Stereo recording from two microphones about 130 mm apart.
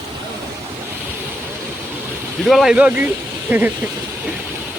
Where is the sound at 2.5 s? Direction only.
Centre (ahead or behind).